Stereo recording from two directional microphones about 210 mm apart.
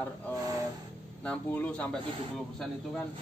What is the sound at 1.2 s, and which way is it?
Speech, 5° left (ahead or behind).